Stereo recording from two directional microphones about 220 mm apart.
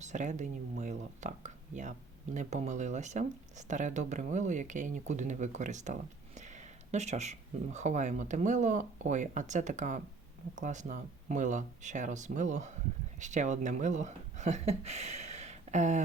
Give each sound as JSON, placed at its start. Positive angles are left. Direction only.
{"t": 0.0, "sound": "speech", "side_deg": -30}